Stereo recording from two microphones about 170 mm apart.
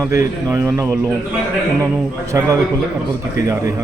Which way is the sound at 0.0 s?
15° right (ahead or behind).